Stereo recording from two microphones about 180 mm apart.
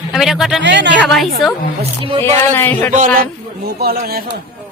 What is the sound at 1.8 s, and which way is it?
Speech, 30° right (ahead or behind).